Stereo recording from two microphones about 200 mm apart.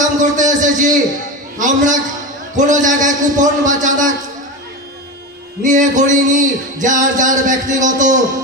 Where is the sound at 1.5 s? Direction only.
40° right (ahead or behind).